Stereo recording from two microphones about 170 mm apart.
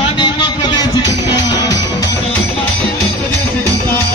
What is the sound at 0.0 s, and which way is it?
Music, 30° left (ahead or behind).